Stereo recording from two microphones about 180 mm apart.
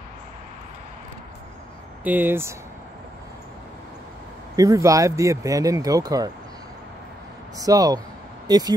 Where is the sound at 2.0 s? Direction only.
10° right (ahead or behind).